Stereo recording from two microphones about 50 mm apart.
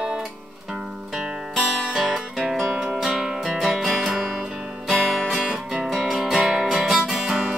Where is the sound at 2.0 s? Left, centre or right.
Centre.